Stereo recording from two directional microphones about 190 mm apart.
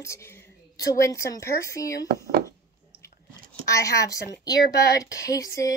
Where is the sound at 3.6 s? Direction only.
15° left (ahead or behind).